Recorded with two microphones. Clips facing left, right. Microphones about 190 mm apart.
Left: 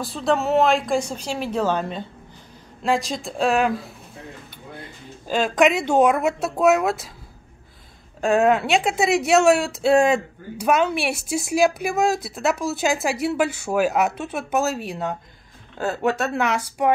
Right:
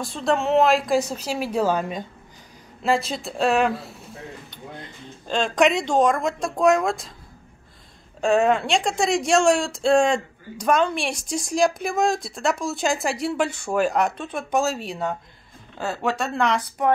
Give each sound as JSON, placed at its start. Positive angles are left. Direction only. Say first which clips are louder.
{"t": 0.0, "sound": "speech", "louder": "left 1 dB", "side_deg": 0}
{"t": 8.2, "sound": "a woman's voice", "louder": "left 1 dB", "side_deg": 0}